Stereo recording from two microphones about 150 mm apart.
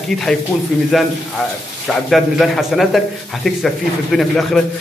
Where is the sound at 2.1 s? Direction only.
Centre (ahead or behind).